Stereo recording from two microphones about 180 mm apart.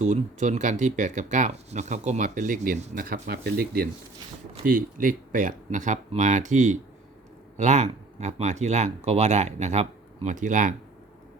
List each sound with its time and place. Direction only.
0.0 s speech: 45° right (ahead or behind)